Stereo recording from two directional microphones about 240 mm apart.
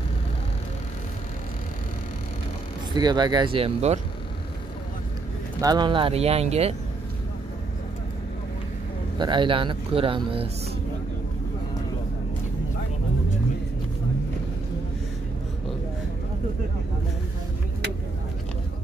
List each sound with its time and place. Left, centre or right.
2.9 s speech: centre
5.6 s speech: centre
9.2 s speech: centre